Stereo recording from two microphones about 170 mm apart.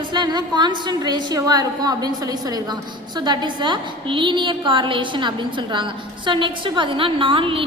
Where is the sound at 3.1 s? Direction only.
25° right (ahead or behind).